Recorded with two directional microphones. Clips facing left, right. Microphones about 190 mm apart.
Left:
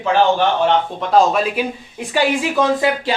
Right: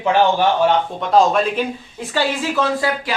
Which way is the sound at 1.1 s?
5° left (ahead or behind).